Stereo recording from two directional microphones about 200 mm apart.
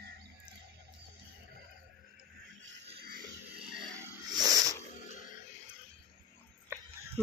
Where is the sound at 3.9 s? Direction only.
15° right (ahead or behind).